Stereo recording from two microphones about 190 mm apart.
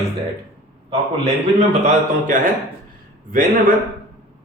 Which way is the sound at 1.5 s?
40° right (ahead or behind).